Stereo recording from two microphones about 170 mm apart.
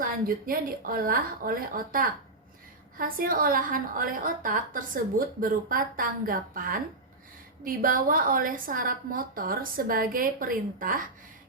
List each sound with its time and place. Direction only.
0.0 s a woman's voice: 55° right (ahead or behind)